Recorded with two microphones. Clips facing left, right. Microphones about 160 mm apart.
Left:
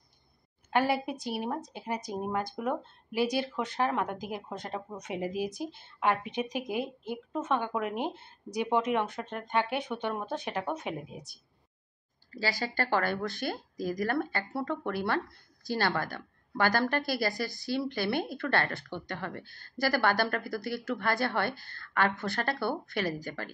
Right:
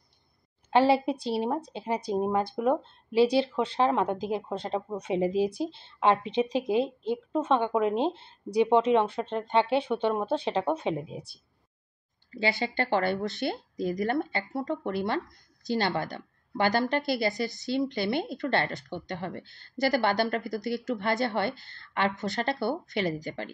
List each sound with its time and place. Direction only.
0.7 s a woman's voice: 25° right (ahead or behind)
12.3 s a woman's voice: 25° right (ahead or behind)